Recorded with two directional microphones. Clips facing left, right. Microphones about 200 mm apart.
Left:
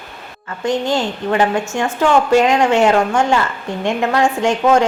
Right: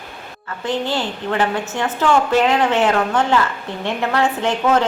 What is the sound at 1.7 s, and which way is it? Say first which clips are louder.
A woman's voice: left 2 dB; 15° left (ahead or behind).